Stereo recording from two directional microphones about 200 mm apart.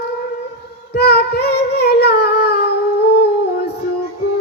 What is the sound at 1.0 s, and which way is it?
Child singing, 55° left (ahead or behind).